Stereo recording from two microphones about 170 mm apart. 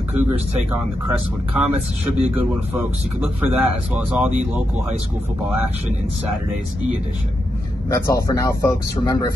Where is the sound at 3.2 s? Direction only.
10° right (ahead or behind).